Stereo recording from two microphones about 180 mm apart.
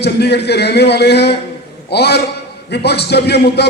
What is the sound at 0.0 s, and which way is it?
A man's voice, 65° left (ahead or behind).